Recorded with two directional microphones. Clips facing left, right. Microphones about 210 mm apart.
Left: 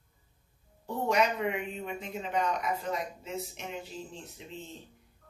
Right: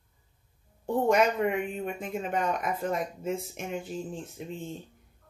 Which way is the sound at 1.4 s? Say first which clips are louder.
Right 5 dB; 50° right (ahead or behind).